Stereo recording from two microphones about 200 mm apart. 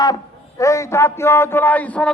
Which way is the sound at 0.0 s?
15° left (ahead or behind).